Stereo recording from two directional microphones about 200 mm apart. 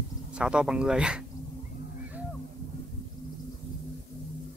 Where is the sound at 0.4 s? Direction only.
5° right (ahead or behind).